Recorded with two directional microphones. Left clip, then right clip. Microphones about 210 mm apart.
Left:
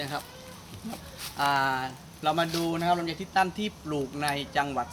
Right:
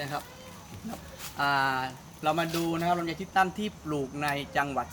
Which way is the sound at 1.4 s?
5° right (ahead or behind).